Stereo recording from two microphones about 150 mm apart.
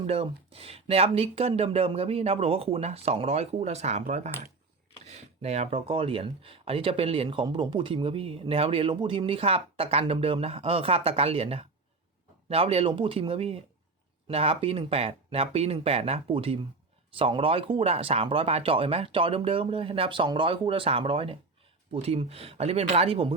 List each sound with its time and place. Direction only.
0.1 s speech: 40° right (ahead or behind)